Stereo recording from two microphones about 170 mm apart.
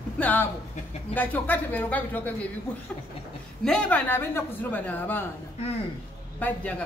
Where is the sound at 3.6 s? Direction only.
5° left (ahead or behind).